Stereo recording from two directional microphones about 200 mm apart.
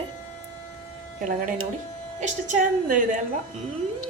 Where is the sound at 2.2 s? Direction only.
40° right (ahead or behind).